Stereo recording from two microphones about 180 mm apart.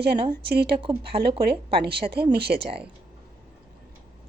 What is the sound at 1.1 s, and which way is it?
Speech, 30° right (ahead or behind).